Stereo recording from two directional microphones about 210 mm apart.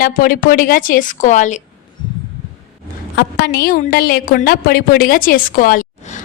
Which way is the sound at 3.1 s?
45° left (ahead or behind).